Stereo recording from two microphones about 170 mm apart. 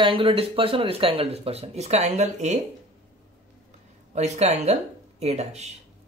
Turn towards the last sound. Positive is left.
turn(degrees=-40)  # may be behind; listen again after turning